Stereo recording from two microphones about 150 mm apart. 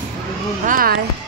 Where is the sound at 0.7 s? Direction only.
70° right (ahead or behind).